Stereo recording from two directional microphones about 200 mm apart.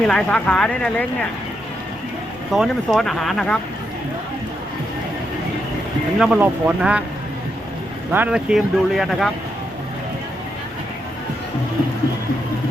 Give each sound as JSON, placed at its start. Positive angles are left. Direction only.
{"t": 0.1, "sound": "speech", "side_deg": 5}
{"t": 2.5, "sound": "speech", "side_deg": 0}
{"t": 6.1, "sound": "speech", "side_deg": -5}
{"t": 8.1, "sound": "speech", "side_deg": -5}